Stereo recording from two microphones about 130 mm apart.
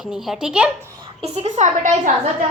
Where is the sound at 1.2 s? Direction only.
55° right (ahead or behind).